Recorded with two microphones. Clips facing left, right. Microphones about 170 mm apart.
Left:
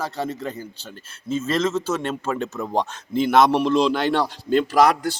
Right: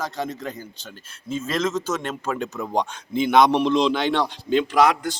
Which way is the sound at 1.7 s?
30° left (ahead or behind).